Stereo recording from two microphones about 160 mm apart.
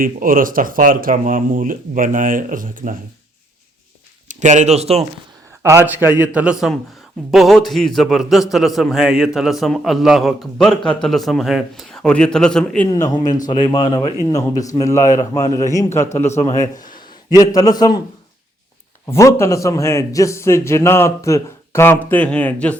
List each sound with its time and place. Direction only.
0.0 s speech: 60° right (ahead or behind)
4.3 s speech: 50° right (ahead or behind)
5.6 s a man's voice: 15° right (ahead or behind); by 12.9 s 5° left (ahead or behind)
12.9 s a man's voice: 25° left (ahead or behind)
16.4 s a man's voice: 45° left (ahead or behind)
17.3 s a man's voice: 20° left (ahead or behind)
19.0 s a man's voice: 15° left (ahead or behind)